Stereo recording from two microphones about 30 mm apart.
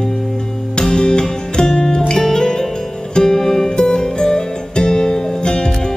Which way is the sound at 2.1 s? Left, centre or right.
Centre.